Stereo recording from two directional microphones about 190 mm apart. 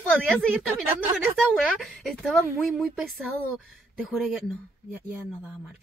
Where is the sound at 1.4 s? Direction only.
5° right (ahead or behind).